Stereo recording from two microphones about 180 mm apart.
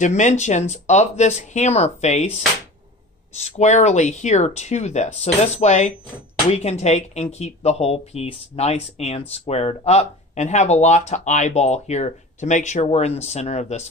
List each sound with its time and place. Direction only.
0.0 s speech: 40° left (ahead or behind)